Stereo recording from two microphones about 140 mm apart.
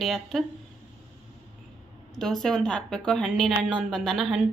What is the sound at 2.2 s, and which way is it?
A woman's voice, 5° left (ahead or behind).